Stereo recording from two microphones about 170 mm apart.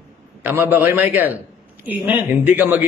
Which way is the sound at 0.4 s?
10° right (ahead or behind).